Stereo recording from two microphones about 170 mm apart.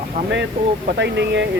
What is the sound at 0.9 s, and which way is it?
Speech, 90° right.